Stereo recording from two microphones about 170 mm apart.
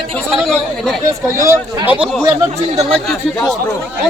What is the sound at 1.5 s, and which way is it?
Speech, 15° right (ahead or behind).